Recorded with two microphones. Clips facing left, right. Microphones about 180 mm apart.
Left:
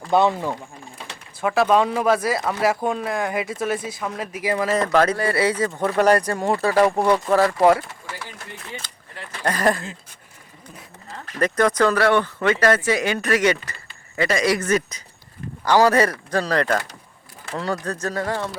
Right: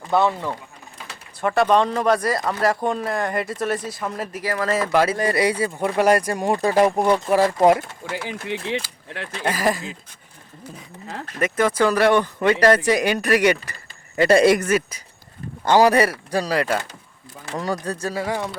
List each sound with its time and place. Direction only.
0.1 s speech: 20° left (ahead or behind)
0.3 s speech: 10° left (ahead or behind)
4.4 s speech: 15° left (ahead or behind)
4.7 s speech: 10° right (ahead or behind)
8.1 s speech: 85° right
9.0 s speech: 75° right (ahead or behind)
9.4 s speech: 5° right (ahead or behind)
11.3 s speech: 5° right (ahead or behind)